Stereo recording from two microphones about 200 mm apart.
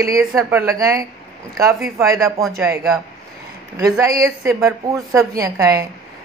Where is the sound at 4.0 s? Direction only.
15° right (ahead or behind).